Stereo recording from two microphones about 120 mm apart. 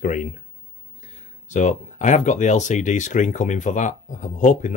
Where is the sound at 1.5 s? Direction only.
90° left.